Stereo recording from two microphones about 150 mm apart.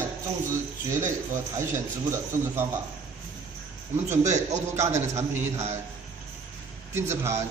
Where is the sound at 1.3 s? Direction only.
15° right (ahead or behind).